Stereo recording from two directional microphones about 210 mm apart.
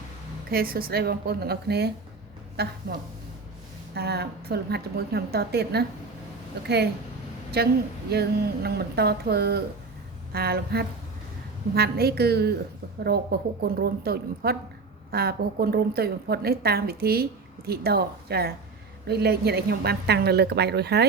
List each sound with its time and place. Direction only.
0.5 s a woman's voice: 45° right (ahead or behind)
3.9 s a woman's voice: 50° right (ahead or behind)
7.6 s a woman's voice: 50° right (ahead or behind)
13.6 s a woman's voice: 45° right (ahead or behind)